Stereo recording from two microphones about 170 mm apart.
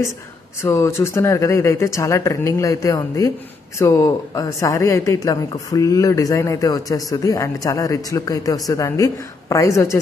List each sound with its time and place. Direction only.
0.6 s speech: 15° left (ahead or behind)